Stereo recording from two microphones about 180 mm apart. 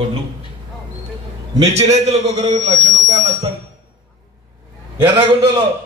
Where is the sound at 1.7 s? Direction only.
35° right (ahead or behind).